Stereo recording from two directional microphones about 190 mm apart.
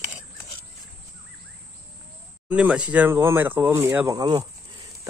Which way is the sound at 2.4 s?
5° right (ahead or behind).